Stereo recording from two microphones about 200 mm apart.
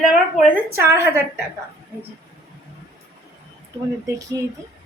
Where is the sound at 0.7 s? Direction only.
10° right (ahead or behind).